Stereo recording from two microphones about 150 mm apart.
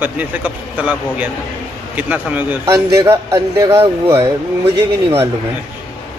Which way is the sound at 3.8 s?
35° right (ahead or behind).